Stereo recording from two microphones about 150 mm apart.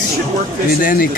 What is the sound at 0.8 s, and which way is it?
Speech, 75° left (ahead or behind).